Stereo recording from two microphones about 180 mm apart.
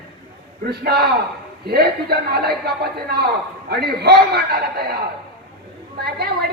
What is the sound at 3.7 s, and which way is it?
A woman's voice, 60° right (ahead or behind).